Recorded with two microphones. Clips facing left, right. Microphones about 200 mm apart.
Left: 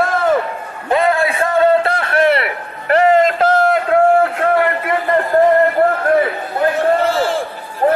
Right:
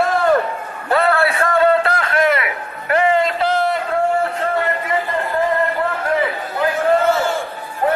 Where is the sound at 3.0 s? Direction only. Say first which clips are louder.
Left 5 dB; 45° left (ahead or behind); by 5.2 s 60° left (ahead or behind).